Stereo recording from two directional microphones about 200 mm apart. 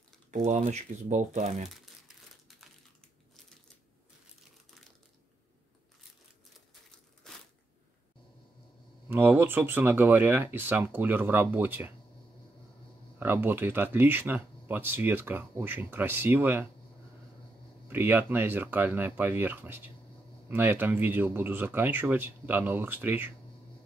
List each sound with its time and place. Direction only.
0.3 s speech: 35° right (ahead or behind)
9.1 s speech: 10° right (ahead or behind)
13.2 s speech: 10° right (ahead or behind)
17.8 s speech: 10° right (ahead or behind)